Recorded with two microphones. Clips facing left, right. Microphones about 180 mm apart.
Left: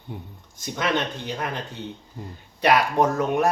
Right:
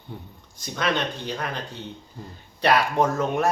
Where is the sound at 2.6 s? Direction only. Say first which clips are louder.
Left 1 dB; 15° left (ahead or behind).